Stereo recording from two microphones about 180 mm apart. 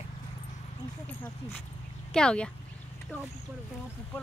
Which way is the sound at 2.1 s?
5° left (ahead or behind).